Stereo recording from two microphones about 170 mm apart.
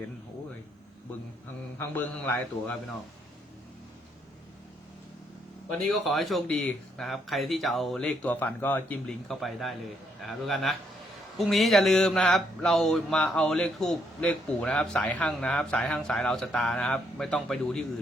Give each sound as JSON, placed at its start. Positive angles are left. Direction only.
{"t": 1.8, "sound": "a man's voice", "side_deg": 15}
{"t": 5.9, "sound": "speech", "side_deg": 0}